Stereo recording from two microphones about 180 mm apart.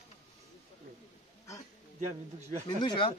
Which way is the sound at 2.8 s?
25° left (ahead or behind).